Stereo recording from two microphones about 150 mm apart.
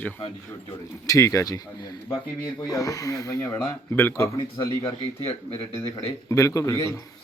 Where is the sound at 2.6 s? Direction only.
25° left (ahead or behind).